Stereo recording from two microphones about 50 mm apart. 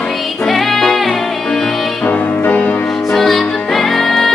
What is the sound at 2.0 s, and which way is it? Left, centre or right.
Music, left.